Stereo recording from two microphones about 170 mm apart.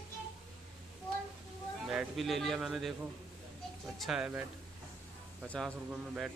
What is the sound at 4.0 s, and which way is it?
Speech, 5° right (ahead or behind).